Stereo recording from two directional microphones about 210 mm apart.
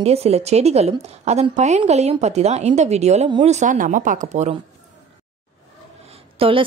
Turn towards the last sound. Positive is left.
turn(degrees=-25)  # may be behind; listen again after turning